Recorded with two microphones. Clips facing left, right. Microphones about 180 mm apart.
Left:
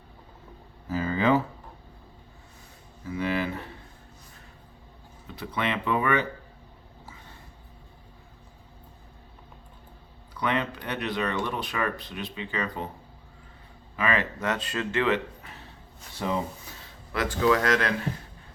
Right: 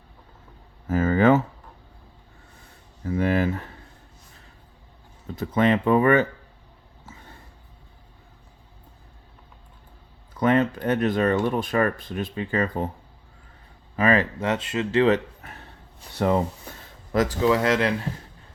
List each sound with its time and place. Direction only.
0.9 s speech: 50° right (ahead or behind)
3.0 s a sound: 50° right (ahead or behind)
5.4 s speech: 45° right (ahead or behind)
10.3 s speech: 45° right (ahead or behind)
13.9 s speech: 40° right (ahead or behind); by 15.0 s 25° right (ahead or behind)
15.0 s speech: 40° right (ahead or behind)
16.1 s speech: 65° right (ahead or behind)
16.7 s a sound: 55° right (ahead or behind)
17.1 s speech: 40° right (ahead or behind)
17.4 s speech: 25° right (ahead or behind)